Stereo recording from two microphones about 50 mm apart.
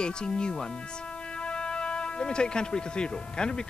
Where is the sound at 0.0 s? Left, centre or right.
Centre.